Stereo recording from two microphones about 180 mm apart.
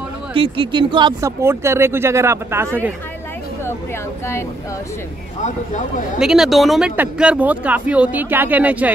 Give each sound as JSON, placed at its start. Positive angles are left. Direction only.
{"t": 0.3, "sound": "speech", "side_deg": -30}
{"t": 1.4, "sound": "speech", "side_deg": -15}
{"t": 6.1, "sound": "speech", "side_deg": -5}